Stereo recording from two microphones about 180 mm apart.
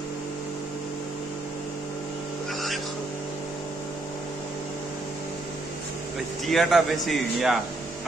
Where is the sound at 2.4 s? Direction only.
Centre (ahead or behind).